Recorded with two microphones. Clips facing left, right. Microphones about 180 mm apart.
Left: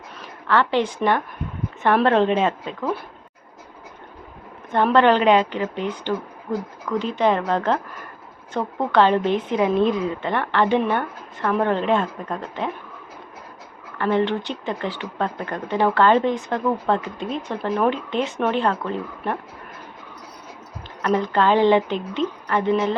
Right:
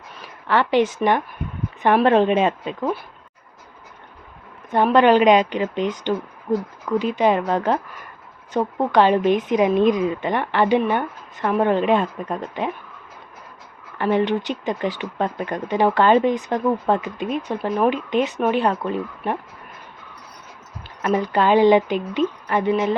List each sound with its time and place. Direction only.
0.4 s a woman's voice: 15° right (ahead or behind)
4.7 s a woman's voice: 15° right (ahead or behind)
14.0 s a woman's voice: 15° right (ahead or behind)
21.0 s a woman's voice: 10° right (ahead or behind)